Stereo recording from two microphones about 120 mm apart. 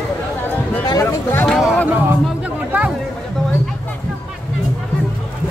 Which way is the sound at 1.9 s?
15° right (ahead or behind).